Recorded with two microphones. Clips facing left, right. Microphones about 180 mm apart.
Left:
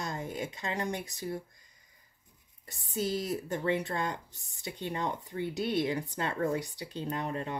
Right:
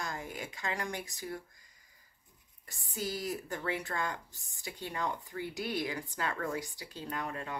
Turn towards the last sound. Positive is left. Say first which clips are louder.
# left 4 dB
turn(degrees=25)  # may be behind; listen again after turning